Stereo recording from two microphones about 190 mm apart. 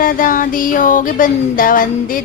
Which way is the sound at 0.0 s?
45° left (ahead or behind).